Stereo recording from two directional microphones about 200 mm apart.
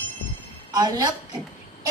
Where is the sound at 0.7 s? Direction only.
20° right (ahead or behind).